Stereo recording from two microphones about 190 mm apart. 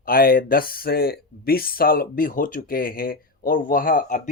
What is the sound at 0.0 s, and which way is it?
Speech, 50° left (ahead or behind).